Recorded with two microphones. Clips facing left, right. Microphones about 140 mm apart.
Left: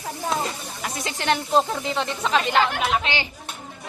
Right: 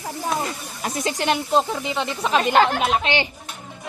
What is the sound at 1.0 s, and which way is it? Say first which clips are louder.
Speech: right 2 dB; 20° right (ahead or behind).